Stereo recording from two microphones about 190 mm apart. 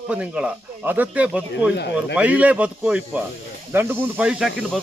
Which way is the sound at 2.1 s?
5° right (ahead or behind).